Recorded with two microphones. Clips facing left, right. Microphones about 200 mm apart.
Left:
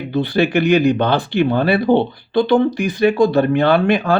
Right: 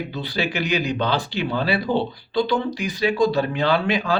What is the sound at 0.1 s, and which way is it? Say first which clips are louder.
Speech: left 10 dB; 55° left (ahead or behind).